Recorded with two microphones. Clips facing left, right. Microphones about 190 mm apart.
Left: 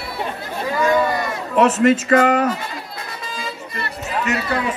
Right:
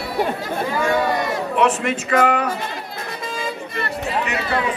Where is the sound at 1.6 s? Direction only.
40° left (ahead or behind).